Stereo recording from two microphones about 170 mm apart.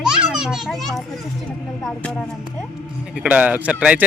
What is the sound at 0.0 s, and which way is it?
Children playing, 5° right (ahead or behind).